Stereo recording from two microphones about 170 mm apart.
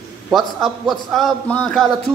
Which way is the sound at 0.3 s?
Centre (ahead or behind).